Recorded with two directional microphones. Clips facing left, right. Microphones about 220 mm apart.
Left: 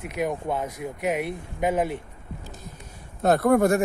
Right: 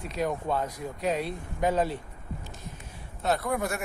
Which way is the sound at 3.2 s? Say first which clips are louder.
Left 9 dB; 50° left (ahead or behind).